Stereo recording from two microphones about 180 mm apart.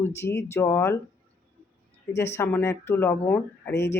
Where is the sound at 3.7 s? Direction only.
70° left (ahead or behind).